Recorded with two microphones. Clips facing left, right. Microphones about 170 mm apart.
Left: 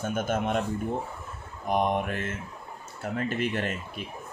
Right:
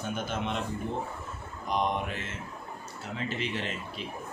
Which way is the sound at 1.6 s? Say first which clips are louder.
Left 4 dB; 55° left (ahead or behind).